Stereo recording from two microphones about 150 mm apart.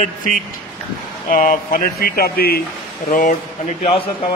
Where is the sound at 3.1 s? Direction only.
60° left (ahead or behind).